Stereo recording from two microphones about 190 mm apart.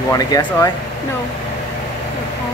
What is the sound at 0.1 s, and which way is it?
Speech, 20° left (ahead or behind).